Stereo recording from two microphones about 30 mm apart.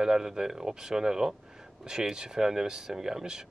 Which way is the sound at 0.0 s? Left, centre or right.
Right.